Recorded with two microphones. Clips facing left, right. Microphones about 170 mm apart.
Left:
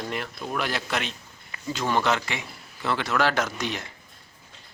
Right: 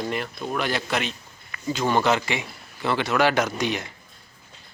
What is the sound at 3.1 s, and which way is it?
Speech, 15° right (ahead or behind).